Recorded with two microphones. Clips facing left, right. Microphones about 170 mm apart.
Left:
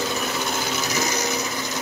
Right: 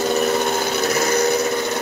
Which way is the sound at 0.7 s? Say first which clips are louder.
Right 8 dB; 60° right (ahead or behind).